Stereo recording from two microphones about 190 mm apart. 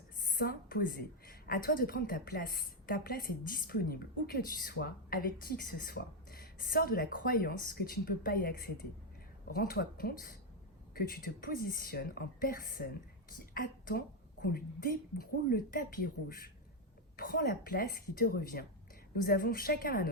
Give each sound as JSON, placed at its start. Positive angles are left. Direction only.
{"t": 0.2, "sound": "a woman's voice", "side_deg": 50}
{"t": 17.2, "sound": "a woman's voice", "side_deg": 50}